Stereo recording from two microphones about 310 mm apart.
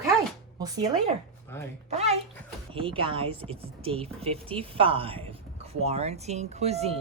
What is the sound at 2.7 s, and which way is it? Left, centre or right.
Speech, centre.